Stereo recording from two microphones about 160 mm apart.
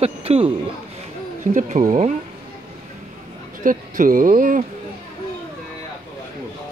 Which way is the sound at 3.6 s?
55° right (ahead or behind).